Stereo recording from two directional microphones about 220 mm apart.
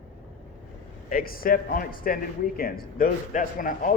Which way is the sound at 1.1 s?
40° left (ahead or behind).